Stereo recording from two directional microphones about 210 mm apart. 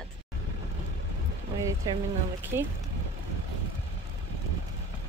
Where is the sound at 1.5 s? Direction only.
15° right (ahead or behind).